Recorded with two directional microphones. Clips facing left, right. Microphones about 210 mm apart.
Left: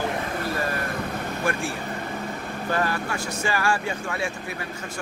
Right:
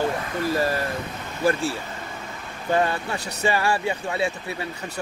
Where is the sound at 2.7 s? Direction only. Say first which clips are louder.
Right 4 dB; 20° right (ahead or behind).